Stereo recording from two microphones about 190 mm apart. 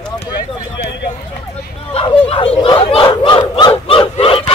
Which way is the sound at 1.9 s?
30° left (ahead or behind).